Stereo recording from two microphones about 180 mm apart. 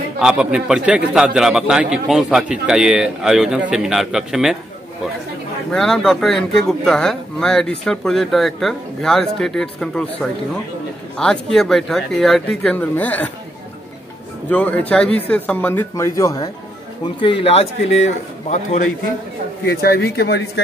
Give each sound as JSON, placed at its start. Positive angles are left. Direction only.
{"t": 0.2, "sound": "speech", "side_deg": -5}
{"t": 5.7, "sound": "speech", "side_deg": 5}
{"t": 14.5, "sound": "speech", "side_deg": 10}
{"t": 17.2, "sound": "a man's voice", "side_deg": 30}
{"t": 19.6, "sound": "speech", "side_deg": 60}